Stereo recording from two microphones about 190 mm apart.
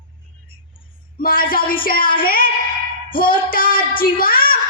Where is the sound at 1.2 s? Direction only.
50° left (ahead or behind).